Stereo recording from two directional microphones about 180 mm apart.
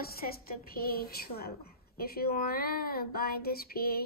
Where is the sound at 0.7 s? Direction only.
55° left (ahead or behind).